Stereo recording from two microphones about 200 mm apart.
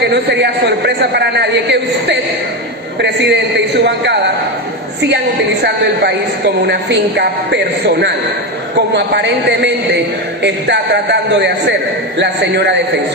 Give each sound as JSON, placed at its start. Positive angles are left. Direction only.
{"t": 0.0, "sound": "a woman's voice", "side_deg": -60}